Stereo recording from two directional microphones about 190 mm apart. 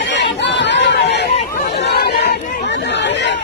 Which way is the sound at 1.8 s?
60° left (ahead or behind).